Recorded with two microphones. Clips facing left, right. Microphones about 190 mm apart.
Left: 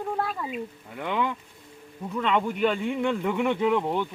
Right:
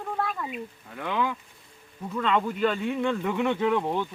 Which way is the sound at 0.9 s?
5° left (ahead or behind).